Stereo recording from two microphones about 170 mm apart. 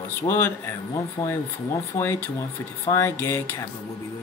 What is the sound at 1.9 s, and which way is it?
Speech, 15° left (ahead or behind).